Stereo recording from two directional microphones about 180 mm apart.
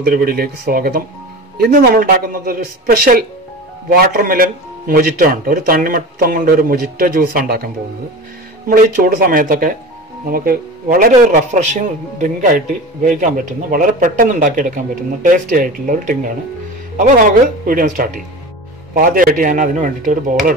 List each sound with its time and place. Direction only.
0.0 s a man's voice: 55° right (ahead or behind)